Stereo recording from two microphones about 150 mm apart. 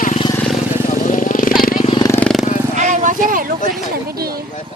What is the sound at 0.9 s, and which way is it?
Vehicle, 60° left (ahead or behind).